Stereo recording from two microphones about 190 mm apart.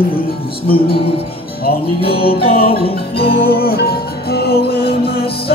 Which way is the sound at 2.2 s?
55° left (ahead or behind).